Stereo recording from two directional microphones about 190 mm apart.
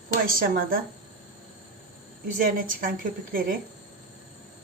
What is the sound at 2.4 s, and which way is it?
A woman's voice, 50° right (ahead or behind).